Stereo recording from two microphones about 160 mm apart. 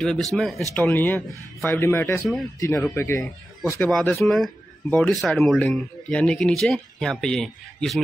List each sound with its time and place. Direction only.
0.0 s speech: 5° left (ahead or behind); by 3.8 s 20° left (ahead or behind)
3.8 s speech: 5° left (ahead or behind)